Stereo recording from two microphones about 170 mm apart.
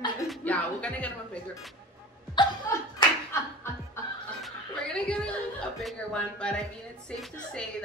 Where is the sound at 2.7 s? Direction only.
15° left (ahead or behind).